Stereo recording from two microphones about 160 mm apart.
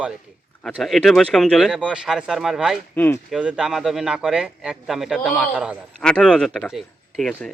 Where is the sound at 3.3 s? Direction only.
5° right (ahead or behind).